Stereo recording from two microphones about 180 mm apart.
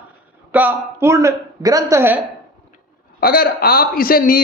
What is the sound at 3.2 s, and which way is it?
A man's voice, 55° left (ahead or behind).